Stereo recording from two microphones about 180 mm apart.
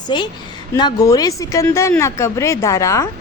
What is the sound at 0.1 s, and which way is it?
A woman's voice, 25° left (ahead or behind).